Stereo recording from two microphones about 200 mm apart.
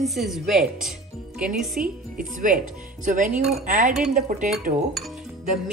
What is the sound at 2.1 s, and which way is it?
Speech, 45° right (ahead or behind).